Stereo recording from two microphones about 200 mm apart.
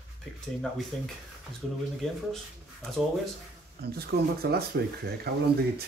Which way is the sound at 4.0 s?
50° right (ahead or behind).